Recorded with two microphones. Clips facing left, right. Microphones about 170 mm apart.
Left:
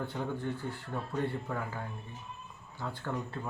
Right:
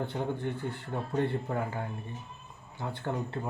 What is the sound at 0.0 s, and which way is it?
Speech, 20° right (ahead or behind).